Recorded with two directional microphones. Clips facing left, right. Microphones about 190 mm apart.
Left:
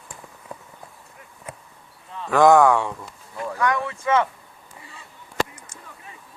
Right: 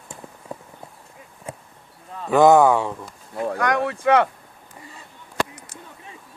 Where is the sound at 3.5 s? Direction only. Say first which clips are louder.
Right 1 dB; 70° right (ahead or behind).